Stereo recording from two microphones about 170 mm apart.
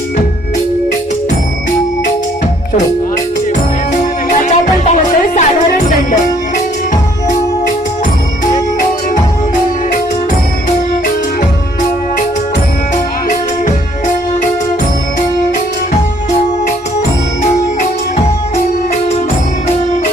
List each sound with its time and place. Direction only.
4.3 s music: 45° left (ahead or behind)